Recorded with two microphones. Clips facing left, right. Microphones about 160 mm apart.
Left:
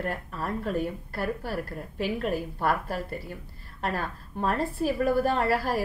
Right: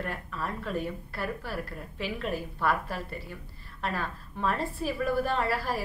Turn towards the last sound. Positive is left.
turn(degrees=45)  # may be behind; listen again after turning